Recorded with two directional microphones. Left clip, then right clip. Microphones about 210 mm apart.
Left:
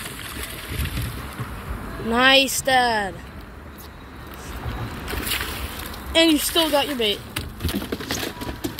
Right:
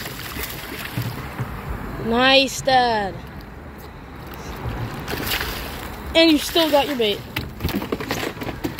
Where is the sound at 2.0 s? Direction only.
Centre (ahead or behind).